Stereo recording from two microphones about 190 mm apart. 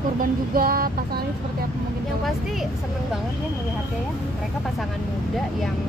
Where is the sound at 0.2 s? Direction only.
50° right (ahead or behind).